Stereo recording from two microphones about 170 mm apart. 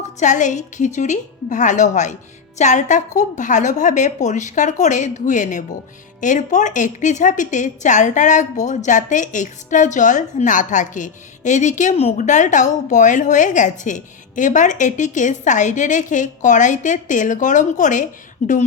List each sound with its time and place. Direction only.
0.0 s a woman's voice: 45° left (ahead or behind)